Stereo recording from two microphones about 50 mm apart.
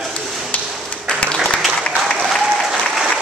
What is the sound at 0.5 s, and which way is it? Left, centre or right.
Ping, left.